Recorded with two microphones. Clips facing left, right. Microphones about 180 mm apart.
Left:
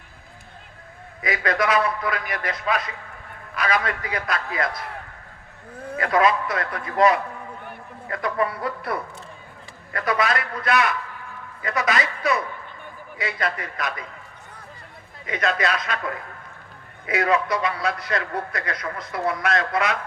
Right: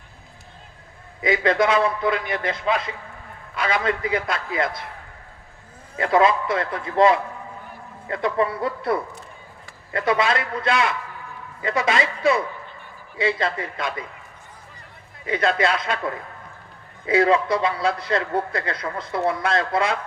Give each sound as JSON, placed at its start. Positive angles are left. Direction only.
{"t": 1.2, "sound": "a man's voice", "side_deg": -25}
{"t": 6.0, "sound": "a man's voice", "side_deg": -25}
{"t": 15.3, "sound": "a man's voice", "side_deg": -30}